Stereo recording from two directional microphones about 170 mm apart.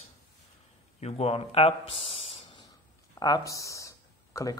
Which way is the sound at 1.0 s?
35° left (ahead or behind).